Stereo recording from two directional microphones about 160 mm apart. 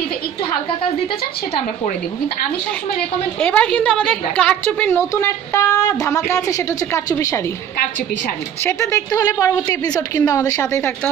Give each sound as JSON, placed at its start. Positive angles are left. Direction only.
{"t": 3.3, "sound": "a woman's voice", "side_deg": 10}
{"t": 8.6, "sound": "a woman's voice", "side_deg": 20}